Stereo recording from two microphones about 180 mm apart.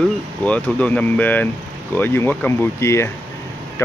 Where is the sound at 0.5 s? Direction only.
5° left (ahead or behind).